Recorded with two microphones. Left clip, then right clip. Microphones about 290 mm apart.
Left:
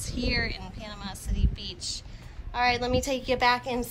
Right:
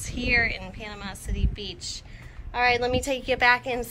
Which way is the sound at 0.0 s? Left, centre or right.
Centre.